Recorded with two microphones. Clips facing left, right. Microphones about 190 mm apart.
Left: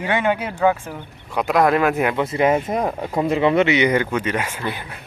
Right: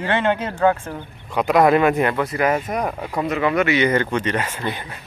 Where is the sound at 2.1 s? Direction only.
25° left (ahead or behind).